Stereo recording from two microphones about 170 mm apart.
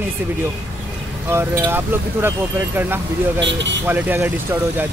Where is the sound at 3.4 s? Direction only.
90° right.